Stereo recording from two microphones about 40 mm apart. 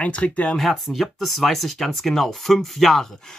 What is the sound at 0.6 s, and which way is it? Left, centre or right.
Speech, centre.